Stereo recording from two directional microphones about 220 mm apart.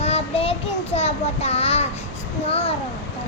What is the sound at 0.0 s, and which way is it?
Child singing, 25° left (ahead or behind).